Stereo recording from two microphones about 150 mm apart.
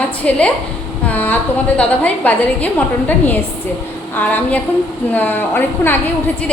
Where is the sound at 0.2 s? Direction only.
10° left (ahead or behind).